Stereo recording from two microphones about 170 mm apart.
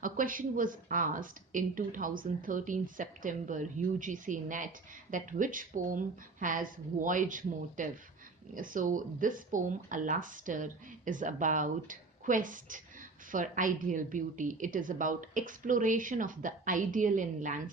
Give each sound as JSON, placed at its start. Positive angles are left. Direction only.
{"t": 0.0, "sound": "speech", "side_deg": -55}